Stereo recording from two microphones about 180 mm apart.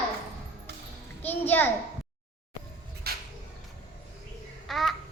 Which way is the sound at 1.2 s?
10° left (ahead or behind).